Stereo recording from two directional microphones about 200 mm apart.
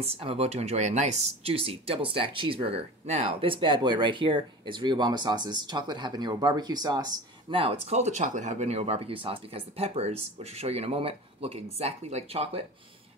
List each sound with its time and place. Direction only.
0.0 s speech: 30° right (ahead or behind)